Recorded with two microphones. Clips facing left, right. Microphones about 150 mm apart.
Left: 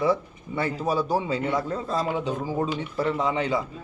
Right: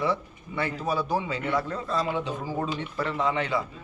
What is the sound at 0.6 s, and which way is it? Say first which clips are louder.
A man's voice: left 3 dB; 40° left (ahead or behind).